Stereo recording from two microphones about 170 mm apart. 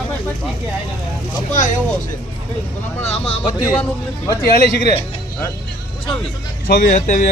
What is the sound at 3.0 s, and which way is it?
Speech, 35° left (ahead or behind).